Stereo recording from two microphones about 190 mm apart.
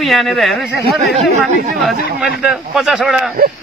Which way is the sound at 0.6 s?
60° left (ahead or behind).